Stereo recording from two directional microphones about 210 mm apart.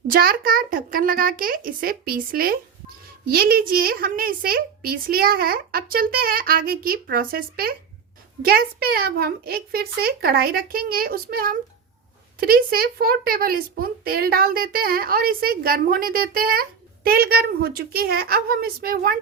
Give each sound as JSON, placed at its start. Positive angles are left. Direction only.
{"t": 0.1, "sound": "a child's voice", "side_deg": -45}